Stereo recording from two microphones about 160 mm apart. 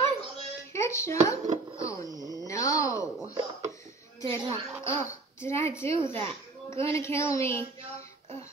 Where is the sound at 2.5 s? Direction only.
20° left (ahead or behind).